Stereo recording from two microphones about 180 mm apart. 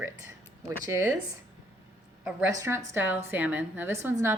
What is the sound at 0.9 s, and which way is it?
Speech, 10° right (ahead or behind).